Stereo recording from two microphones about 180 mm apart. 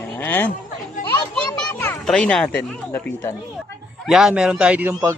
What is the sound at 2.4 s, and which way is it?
Speech, 10° left (ahead or behind).